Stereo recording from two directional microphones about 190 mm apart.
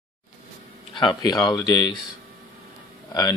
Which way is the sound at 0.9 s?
25° left (ahead or behind).